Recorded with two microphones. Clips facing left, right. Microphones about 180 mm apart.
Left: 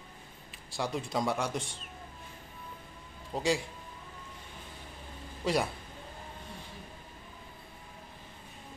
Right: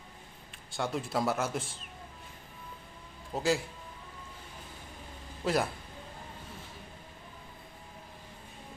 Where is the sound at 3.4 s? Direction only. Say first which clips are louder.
Right 1 dB; centre (ahead or behind).